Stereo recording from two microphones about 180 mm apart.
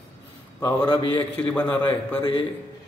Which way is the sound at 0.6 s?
25° left (ahead or behind).